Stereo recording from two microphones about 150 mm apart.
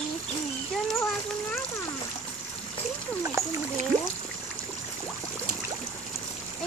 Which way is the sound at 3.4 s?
20° right (ahead or behind).